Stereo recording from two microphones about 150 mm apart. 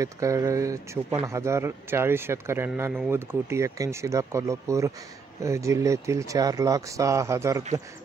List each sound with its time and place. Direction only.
0.0 s speech: 20° right (ahead or behind)